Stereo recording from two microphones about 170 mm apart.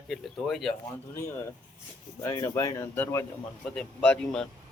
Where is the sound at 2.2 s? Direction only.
15° left (ahead or behind).